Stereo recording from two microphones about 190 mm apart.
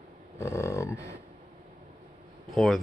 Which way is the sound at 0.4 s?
15° left (ahead or behind).